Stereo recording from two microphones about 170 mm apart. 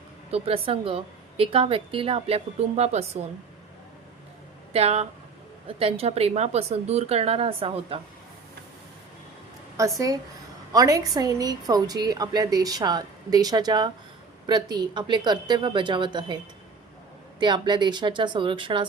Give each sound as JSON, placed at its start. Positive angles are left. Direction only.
{"t": 0.3, "sound": "a woman's voice", "side_deg": -35}
{"t": 4.7, "sound": "a woman's voice", "side_deg": -40}
{"t": 9.7, "sound": "a woman's voice", "side_deg": -20}
{"t": 17.4, "sound": "a woman's voice", "side_deg": -25}